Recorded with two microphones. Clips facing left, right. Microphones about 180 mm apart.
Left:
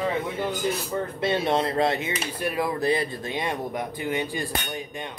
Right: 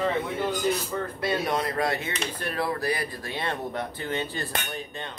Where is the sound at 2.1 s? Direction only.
10° left (ahead or behind).